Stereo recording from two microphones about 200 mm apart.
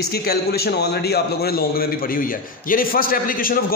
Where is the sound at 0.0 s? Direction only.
50° left (ahead or behind).